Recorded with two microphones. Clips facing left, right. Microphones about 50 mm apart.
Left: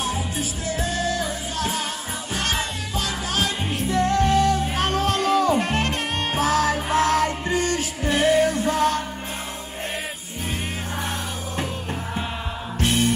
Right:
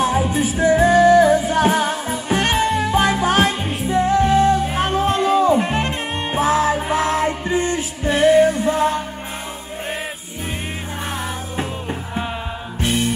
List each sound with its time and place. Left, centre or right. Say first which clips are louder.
0.0 s music: right 9 dB; right
3.6 s music: right 3 dB; centre
11.5 s music: right 1 dB; centre